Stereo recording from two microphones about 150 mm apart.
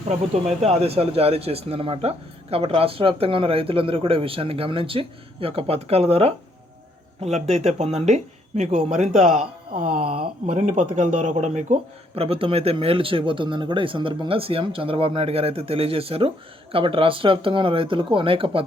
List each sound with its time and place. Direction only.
0.6 s speech: 45° right (ahead or behind)
10.0 s speech: 40° right (ahead or behind)
10.4 s speech: 55° right (ahead or behind); by 18.6 s 35° right (ahead or behind)